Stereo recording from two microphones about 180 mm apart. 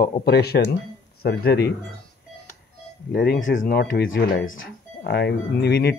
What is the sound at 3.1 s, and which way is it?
Speech, 70° left (ahead or behind).